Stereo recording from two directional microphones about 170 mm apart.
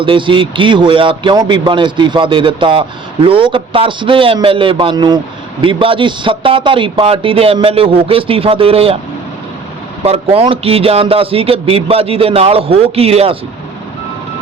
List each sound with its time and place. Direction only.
0.0 s a man's voice: 30° right (ahead or behind)
10.0 s a man's voice: 35° right (ahead or behind)